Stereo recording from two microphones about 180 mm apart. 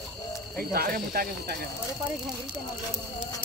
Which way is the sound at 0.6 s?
55° right (ahead or behind).